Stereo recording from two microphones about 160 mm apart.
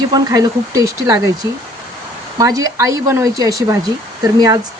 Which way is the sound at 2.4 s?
20° right (ahead or behind).